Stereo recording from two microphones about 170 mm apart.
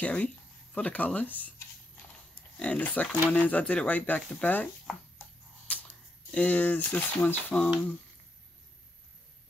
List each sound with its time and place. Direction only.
0.0 s speech: 10° left (ahead or behind)
2.6 s speech: 10° left (ahead or behind)
5.7 s whip: 10° left (ahead or behind)
6.3 s speech: 10° left (ahead or behind)